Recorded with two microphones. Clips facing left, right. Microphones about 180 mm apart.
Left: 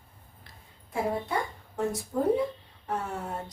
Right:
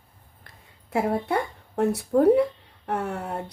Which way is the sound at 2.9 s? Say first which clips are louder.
Right 4 dB; 65° right (ahead or behind).